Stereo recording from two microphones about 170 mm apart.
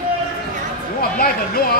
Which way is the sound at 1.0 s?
60° left (ahead or behind).